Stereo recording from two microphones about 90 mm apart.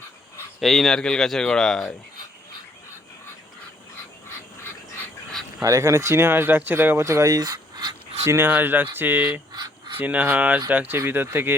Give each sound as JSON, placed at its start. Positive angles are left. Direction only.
{"t": 0.6, "sound": "speech", "side_deg": 5}
{"t": 5.6, "sound": "speech", "side_deg": -35}
{"t": 8.3, "sound": "speech", "side_deg": -20}
{"t": 9.5, "sound": "a sound", "side_deg": -50}
{"t": 10.0, "sound": "speech", "side_deg": -15}